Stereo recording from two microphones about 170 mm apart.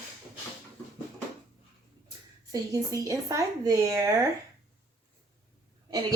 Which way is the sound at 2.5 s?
20° right (ahead or behind).